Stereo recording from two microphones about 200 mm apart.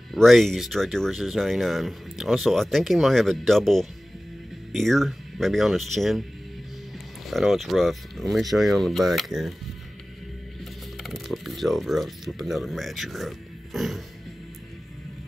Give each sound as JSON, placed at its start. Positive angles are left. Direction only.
{"t": 0.1, "sound": "speech", "side_deg": 0}
{"t": 7.2, "sound": "speech", "side_deg": 0}
{"t": 10.6, "sound": "speech", "side_deg": 0}
{"t": 13.7, "sound": "music", "side_deg": 0}